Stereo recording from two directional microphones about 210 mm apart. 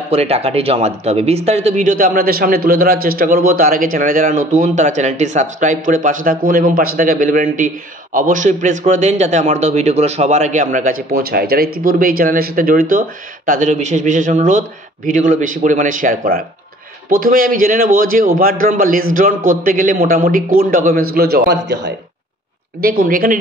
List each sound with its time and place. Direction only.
0.1 s a man's voice: 30° right (ahead or behind)